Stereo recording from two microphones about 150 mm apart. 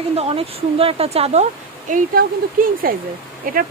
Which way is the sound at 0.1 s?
40° right (ahead or behind).